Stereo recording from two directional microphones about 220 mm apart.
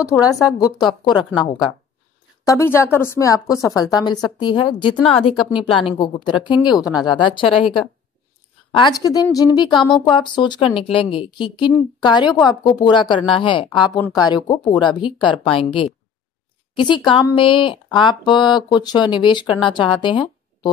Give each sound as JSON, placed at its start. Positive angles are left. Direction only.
{"t": 0.0, "sound": "a woman's voice", "side_deg": 15}
{"t": 2.4, "sound": "a woman's voice", "side_deg": 15}
{"t": 8.7, "sound": "a woman's voice", "side_deg": 20}